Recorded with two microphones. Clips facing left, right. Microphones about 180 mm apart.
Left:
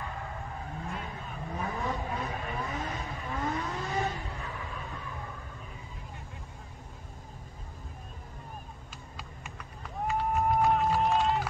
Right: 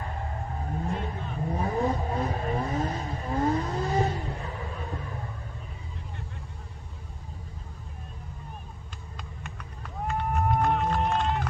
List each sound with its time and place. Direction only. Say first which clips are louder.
0.8 s vehicle: right 6 dB; 40° right (ahead or behind)
3.9 s vehicle: right 5 dB; 20° right (ahead or behind)
4.3 s a sound: right 4 dB; 40° right (ahead or behind)
9.1 s run: right 4 dB; centre (ahead or behind)